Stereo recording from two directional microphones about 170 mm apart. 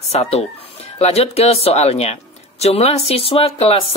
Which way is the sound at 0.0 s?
40° left (ahead or behind).